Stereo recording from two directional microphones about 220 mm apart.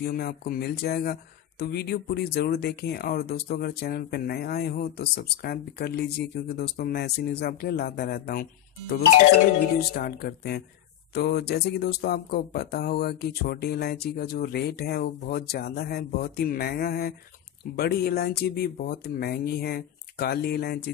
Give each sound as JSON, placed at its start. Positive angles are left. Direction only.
{"t": 0.0, "sound": "speech", "side_deg": 45}
{"t": 9.5, "sound": "speech", "side_deg": 45}